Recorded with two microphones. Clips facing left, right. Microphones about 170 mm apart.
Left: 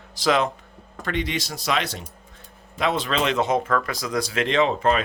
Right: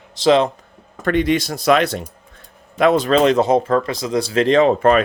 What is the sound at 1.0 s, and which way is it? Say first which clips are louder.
Speech: right 10 dB; 50° right (ahead or behind).